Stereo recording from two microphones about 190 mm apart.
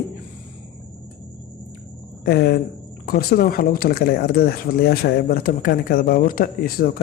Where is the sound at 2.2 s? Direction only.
55° left (ahead or behind).